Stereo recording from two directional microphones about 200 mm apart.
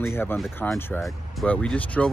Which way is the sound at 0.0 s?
10° left (ahead or behind).